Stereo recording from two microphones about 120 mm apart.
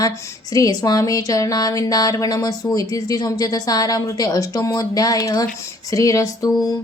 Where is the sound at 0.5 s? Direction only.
30° left (ahead or behind).